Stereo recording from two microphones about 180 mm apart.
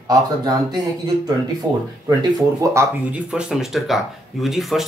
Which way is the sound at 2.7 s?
5° right (ahead or behind).